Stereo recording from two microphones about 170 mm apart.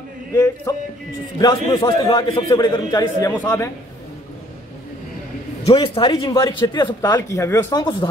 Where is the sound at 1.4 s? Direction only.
25° left (ahead or behind).